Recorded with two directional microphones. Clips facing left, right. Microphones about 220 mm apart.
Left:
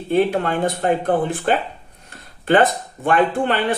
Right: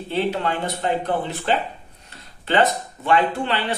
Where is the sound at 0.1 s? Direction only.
50° left (ahead or behind).